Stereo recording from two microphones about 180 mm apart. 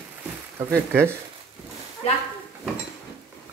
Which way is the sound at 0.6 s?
10° right (ahead or behind).